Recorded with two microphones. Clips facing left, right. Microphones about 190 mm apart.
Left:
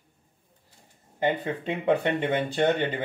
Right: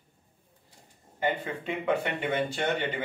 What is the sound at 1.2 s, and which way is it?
Speech, 35° left (ahead or behind).